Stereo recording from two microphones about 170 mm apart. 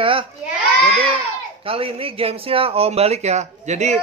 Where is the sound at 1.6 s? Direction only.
35° right (ahead or behind).